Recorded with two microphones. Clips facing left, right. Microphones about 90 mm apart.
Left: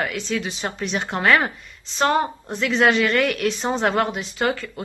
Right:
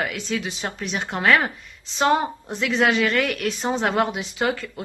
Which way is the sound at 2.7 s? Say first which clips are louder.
Left 2 dB; 5° right (ahead or behind).